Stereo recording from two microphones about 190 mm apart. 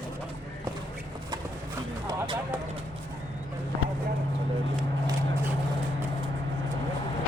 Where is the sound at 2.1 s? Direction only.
20° right (ahead or behind).